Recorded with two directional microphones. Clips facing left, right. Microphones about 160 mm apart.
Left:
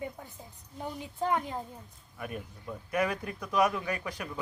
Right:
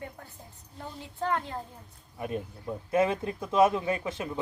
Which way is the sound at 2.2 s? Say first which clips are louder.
Right 5 dB; 25° right (ahead or behind).